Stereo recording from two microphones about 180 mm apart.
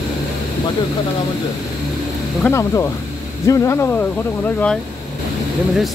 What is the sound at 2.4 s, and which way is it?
Speech, 15° left (ahead or behind).